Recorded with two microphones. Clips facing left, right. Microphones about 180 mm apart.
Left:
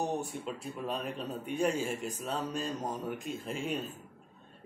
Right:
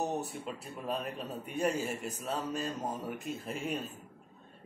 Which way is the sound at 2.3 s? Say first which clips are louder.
Even; 5° right (ahead or behind).